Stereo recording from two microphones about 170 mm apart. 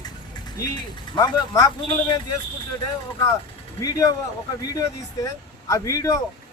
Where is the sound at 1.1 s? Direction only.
20° left (ahead or behind).